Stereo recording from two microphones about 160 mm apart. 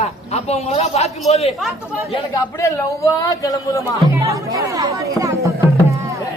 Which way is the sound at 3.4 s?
20° left (ahead or behind).